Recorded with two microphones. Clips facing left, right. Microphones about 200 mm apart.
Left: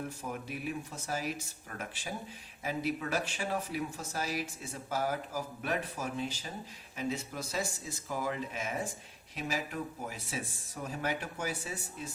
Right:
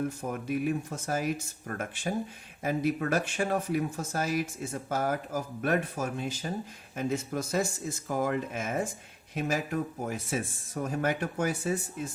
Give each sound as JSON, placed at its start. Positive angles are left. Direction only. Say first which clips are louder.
{"t": 0.2, "sound": "speech", "louder": "right 8 dB", "side_deg": -50}